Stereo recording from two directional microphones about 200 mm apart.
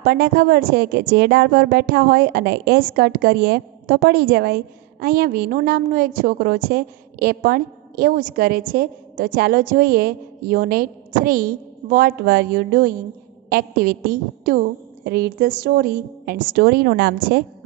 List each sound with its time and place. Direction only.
0.0 s a woman's voice: 50° right (ahead or behind)